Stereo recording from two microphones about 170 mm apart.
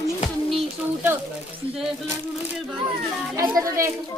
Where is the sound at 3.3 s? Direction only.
20° right (ahead or behind).